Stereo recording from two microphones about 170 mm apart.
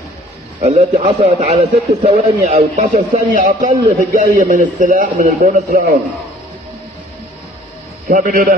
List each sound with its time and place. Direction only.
0.7 s a man's voice: 35° right (ahead or behind); by 5.9 s 50° right (ahead or behind)
8.1 s a man's voice: 50° right (ahead or behind)